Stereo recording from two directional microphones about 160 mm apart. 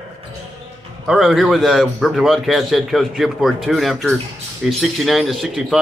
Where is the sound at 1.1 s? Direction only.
Centre (ahead or behind).